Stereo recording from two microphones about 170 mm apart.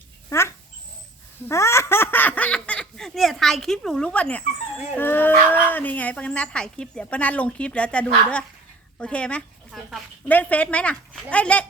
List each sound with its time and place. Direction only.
0.3 s dog: 15° left (ahead or behind)
1.5 s speech: 15° left (ahead or behind)